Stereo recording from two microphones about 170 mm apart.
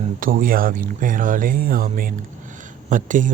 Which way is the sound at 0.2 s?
55° right (ahead or behind).